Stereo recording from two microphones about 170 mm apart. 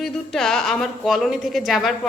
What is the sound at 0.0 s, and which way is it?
Speech, 5° left (ahead or behind).